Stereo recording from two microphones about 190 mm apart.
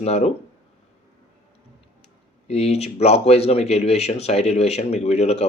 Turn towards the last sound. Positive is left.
turn(degrees=35)  # may be behind; listen again after turning